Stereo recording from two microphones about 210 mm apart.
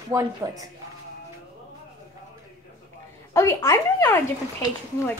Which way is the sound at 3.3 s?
15° left (ahead or behind).